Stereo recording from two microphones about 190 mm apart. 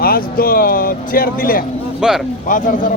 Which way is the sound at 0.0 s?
50° left (ahead or behind).